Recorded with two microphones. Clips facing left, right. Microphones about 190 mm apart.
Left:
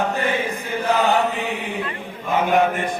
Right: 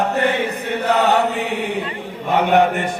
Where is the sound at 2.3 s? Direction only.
70° right (ahead or behind).